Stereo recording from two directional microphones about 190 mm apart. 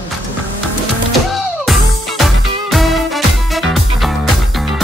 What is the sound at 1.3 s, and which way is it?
Music, centre (ahead or behind).